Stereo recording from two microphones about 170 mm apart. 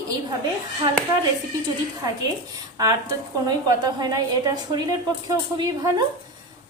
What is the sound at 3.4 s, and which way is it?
A woman's voice, 25° right (ahead or behind).